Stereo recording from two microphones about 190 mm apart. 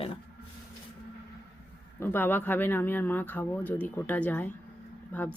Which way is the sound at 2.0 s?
10° left (ahead or behind).